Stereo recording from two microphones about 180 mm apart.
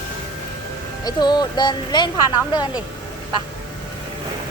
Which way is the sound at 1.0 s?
25° left (ahead or behind).